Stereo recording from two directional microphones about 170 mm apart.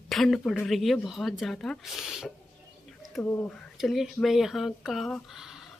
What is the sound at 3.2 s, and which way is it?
Speech, 20° left (ahead or behind).